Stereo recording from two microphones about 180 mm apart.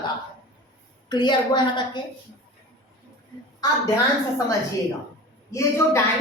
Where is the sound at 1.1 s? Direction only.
25° left (ahead or behind).